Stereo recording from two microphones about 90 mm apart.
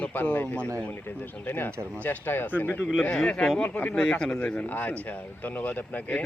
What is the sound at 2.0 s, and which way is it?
Speech, 25° left (ahead or behind).